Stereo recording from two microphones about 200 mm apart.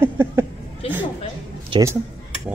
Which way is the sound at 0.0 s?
10° right (ahead or behind).